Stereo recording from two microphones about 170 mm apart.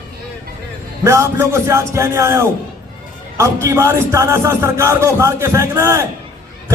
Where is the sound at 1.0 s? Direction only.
15° right (ahead or behind).